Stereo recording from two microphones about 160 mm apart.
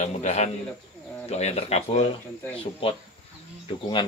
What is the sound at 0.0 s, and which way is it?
A man's voice, 45° left (ahead or behind).